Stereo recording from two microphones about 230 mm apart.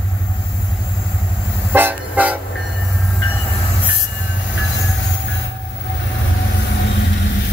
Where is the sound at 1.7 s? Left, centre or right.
Centre.